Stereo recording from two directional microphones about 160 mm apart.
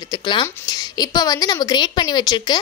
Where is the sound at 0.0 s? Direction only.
25° left (ahead or behind).